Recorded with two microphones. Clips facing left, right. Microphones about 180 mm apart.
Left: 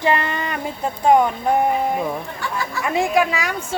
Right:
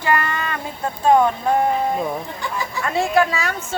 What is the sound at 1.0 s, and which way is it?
Speech, 20° left (ahead or behind).